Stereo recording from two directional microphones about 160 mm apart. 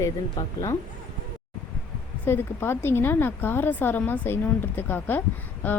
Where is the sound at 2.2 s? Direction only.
15° left (ahead or behind).